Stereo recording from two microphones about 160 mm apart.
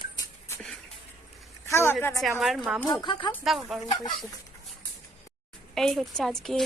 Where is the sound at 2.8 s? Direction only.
30° left (ahead or behind).